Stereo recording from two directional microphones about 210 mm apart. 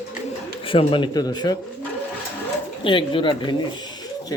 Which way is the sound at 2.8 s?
25° left (ahead or behind).